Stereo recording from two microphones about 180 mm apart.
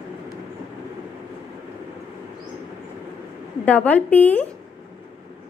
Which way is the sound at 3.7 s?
10° left (ahead or behind).